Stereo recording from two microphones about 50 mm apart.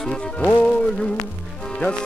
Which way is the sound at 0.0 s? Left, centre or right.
Centre.